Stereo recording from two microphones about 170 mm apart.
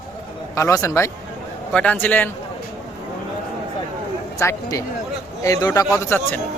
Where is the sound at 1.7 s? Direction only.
5° left (ahead or behind).